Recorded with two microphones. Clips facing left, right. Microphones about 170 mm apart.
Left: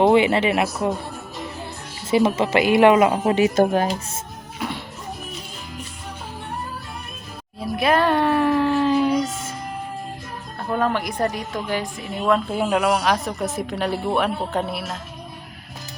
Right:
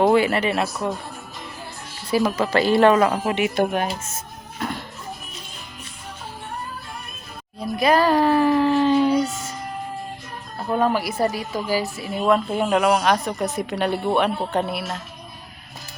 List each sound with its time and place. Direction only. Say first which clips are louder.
0.0 s a woman's voice: left 2 dB; 20° left (ahead or behind)
2.0 s a woman's voice: left 2 dB; 25° left (ahead or behind)
3.3 s speech: left 4 dB; 40° left (ahead or behind)
4.6 s music: even; 5° left (ahead or behind)
7.6 s speech: right 1 dB; centre (ahead or behind)
10.6 s a woman's voice: right 2 dB; 5° right (ahead or behind)